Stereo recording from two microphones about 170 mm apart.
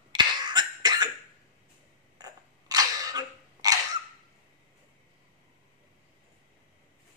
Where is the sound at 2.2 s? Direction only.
20° right (ahead or behind).